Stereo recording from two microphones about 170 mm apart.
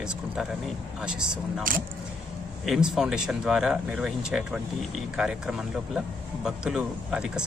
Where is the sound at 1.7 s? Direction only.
55° right (ahead or behind).